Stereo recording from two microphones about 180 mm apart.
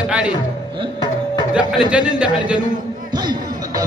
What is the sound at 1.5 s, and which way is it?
Speech, 5° right (ahead or behind).